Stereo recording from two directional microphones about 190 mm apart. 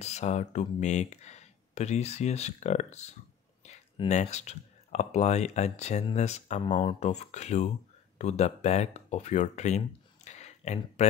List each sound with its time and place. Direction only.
0.0 s speech: 35° left (ahead or behind)
3.6 s a sound: 35° left (ahead or behind)
4.1 s speech: 35° left (ahead or behind)
6.7 s speech: 25° left (ahead or behind)
7.0 s speech: 35° left (ahead or behind)